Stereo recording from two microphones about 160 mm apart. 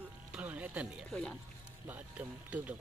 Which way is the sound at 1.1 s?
5° left (ahead or behind).